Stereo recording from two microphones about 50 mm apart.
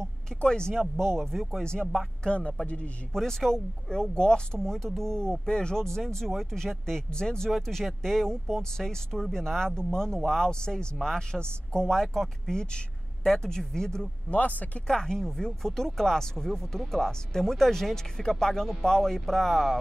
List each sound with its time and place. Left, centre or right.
0.0 s speech: centre
1.6 s a man's voice: centre
3.1 s speech: centre
14.3 s speech: left
14.9 s speech: centre